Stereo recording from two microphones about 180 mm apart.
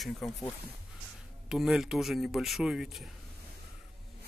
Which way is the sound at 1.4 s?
Centre (ahead or behind).